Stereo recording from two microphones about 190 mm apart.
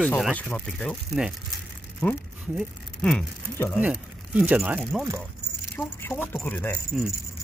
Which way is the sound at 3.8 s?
5° right (ahead or behind).